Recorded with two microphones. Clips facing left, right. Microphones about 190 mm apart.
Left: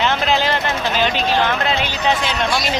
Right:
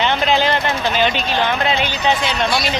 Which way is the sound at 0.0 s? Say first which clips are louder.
Right 1 dB; centre (ahead or behind).